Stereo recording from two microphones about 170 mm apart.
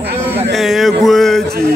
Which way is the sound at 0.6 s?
Centre (ahead or behind).